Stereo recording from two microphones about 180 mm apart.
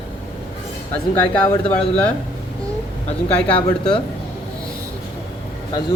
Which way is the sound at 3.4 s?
30° left (ahead or behind).